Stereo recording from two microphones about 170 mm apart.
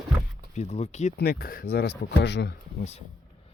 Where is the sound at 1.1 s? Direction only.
60° left (ahead or behind); by 2.5 s 90° left.